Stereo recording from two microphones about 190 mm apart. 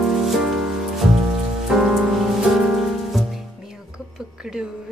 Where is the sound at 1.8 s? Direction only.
Centre (ahead or behind).